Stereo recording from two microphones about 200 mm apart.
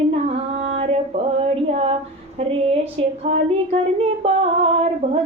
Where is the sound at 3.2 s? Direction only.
30° right (ahead or behind).